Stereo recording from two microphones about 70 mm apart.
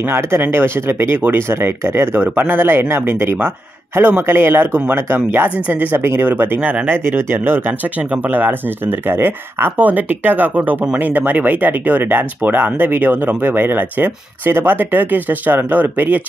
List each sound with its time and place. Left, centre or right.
0.1 s speech: right